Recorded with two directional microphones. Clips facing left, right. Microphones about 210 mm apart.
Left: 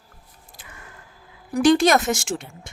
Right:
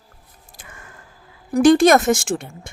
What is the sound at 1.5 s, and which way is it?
Speech, 50° right (ahead or behind).